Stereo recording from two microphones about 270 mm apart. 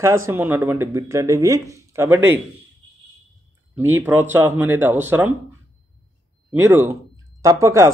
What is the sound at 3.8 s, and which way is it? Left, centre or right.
A man's voice, centre.